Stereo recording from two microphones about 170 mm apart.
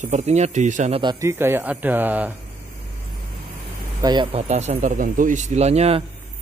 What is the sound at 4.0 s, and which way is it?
Speech, 25° right (ahead or behind).